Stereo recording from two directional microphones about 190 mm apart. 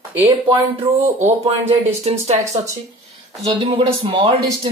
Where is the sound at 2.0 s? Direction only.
35° right (ahead or behind).